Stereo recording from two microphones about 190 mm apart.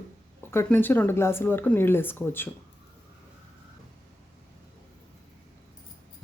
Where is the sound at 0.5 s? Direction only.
10° left (ahead or behind).